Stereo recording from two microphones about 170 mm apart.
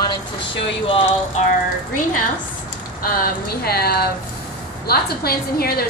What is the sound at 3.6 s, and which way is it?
A woman's voice, 65° left (ahead or behind).